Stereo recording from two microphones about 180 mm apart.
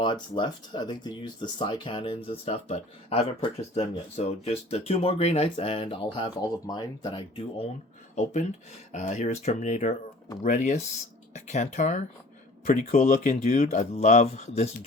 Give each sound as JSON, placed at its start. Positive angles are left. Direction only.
{"t": 0.0, "sound": "speech", "side_deg": 25}
{"t": 8.1, "sound": "speech", "side_deg": 40}